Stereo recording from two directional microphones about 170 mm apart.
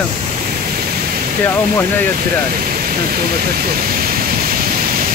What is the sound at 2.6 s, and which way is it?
Pink noise, 60° right (ahead or behind).